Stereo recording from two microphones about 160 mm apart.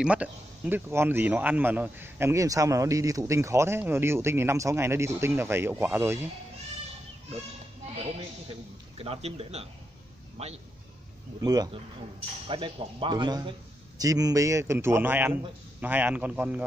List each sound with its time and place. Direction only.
0.0 s a man's voice: 10° right (ahead or behind)
8.9 s speech: 40° right (ahead or behind)
11.4 s a man's voice: 25° right (ahead or behind); by 16.6 s 10° right (ahead or behind)